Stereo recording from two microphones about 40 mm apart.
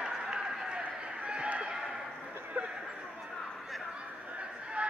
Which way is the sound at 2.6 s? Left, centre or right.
Right.